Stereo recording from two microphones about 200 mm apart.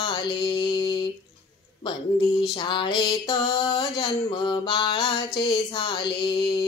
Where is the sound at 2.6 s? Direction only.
25° left (ahead or behind).